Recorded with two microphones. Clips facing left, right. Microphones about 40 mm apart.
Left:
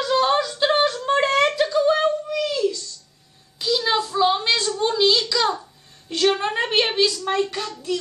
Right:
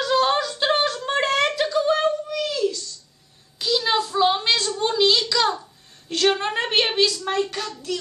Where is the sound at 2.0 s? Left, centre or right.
Centre.